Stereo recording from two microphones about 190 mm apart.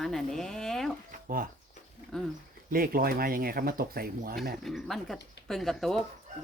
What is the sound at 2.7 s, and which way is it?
Speech, 50° right (ahead or behind).